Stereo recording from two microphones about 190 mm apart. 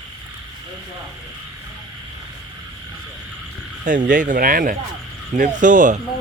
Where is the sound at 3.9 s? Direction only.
45° right (ahead or behind).